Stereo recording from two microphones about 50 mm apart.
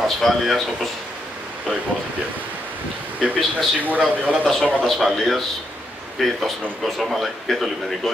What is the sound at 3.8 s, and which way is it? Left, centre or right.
Speech, right.